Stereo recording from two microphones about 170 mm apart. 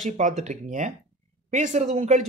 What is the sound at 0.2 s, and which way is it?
A man's voice, 40° right (ahead or behind).